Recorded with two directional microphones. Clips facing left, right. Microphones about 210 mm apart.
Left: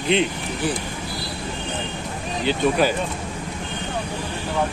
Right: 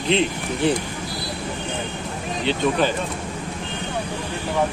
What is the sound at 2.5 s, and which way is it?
Speech, 10° left (ahead or behind).